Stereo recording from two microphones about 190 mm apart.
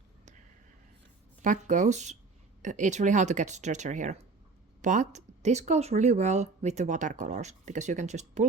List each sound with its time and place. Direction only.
1.4 s speech: 40° right (ahead or behind)